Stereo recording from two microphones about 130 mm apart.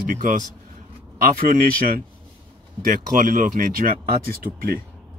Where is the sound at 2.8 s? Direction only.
90° right.